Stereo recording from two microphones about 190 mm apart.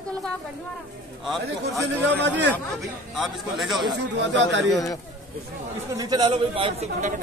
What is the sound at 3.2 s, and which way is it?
Speech, centre (ahead or behind).